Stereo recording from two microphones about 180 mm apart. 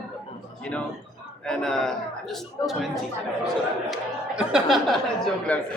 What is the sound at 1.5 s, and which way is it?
Speech, 5° left (ahead or behind).